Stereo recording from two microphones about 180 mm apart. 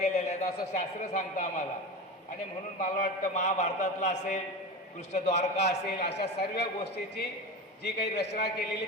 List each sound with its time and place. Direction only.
0.0 s a man's voice: 40° left (ahead or behind)
2.7 s a man's voice: 45° left (ahead or behind)
6.0 s a man's voice: 70° left (ahead or behind)